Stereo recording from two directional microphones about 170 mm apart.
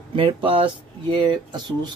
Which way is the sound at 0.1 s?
30° right (ahead or behind).